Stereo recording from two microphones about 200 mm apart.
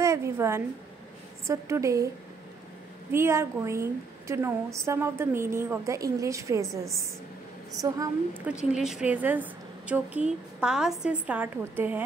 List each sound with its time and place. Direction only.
0.0 s a sound: 15° right (ahead or behind)
1.5 s a woman's voice: 15° right (ahead or behind)
3.1 s a woman's voice: 15° right (ahead or behind)
8.5 s a woman's voice: 5° right (ahead or behind)